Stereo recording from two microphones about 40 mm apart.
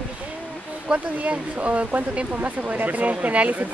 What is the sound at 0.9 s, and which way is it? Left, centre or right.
Speech, right.